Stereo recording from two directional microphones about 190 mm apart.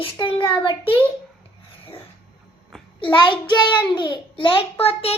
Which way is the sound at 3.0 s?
25° left (ahead or behind).